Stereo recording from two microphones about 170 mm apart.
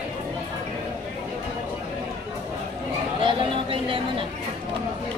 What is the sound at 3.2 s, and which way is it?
Speech, 30° right (ahead or behind).